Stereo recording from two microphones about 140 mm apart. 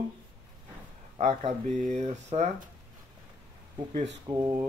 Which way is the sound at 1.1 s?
45° right (ahead or behind).